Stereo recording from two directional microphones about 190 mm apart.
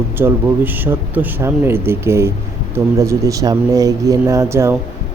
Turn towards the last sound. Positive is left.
turn(degrees=-15)  # may be behind; listen again after turning